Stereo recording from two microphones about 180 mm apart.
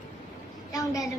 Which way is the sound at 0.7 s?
20° left (ahead or behind).